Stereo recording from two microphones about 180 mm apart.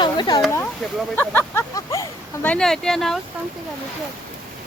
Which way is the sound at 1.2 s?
15° left (ahead or behind).